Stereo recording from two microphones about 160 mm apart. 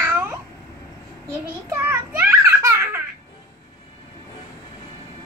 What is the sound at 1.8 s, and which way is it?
Baby laughter, 15° right (ahead or behind).